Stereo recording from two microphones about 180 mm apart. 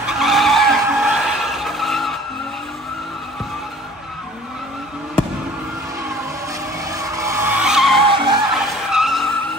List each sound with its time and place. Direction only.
0.0 s skidding: centre (ahead or behind)
6.8 s vehicle: 20° right (ahead or behind); by 8.0 s centre (ahead or behind)
8.1 s music: 30° right (ahead or behind)
8.5 s vehicle: centre (ahead or behind)